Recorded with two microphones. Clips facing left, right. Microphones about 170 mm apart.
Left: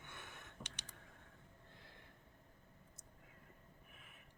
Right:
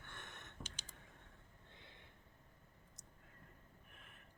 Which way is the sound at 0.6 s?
65° left (ahead or behind).